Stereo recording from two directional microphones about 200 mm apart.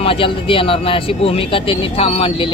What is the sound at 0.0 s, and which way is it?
Speech, 25° left (ahead or behind).